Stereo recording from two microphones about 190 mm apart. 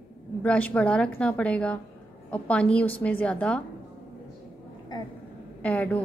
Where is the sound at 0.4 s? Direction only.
5° left (ahead or behind).